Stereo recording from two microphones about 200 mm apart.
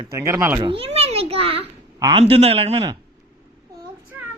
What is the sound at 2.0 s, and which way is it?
Speech, 25° right (ahead or behind).